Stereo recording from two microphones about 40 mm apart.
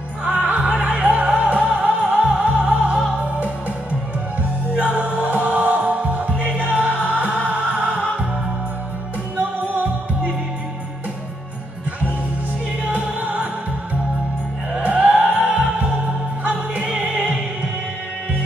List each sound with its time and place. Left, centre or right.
0.2 s music: right
1.4 s music: right
1.8 s music: centre
4.4 s music: right
9.4 s music: right
12.9 s music: right
14.8 s music: right